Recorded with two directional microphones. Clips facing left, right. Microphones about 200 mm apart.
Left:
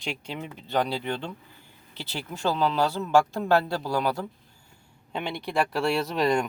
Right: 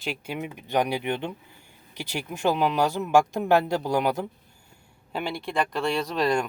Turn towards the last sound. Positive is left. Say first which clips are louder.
# even
turn(degrees=0)  # may be behind; listen again after turning